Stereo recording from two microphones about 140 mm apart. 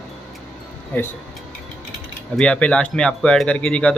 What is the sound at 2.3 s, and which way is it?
Speech, 10° left (ahead or behind).